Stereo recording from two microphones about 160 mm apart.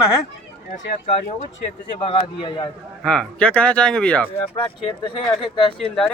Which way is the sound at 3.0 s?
5° left (ahead or behind).